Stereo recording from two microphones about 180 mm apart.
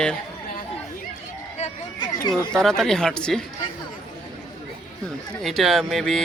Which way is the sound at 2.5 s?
5° left (ahead or behind).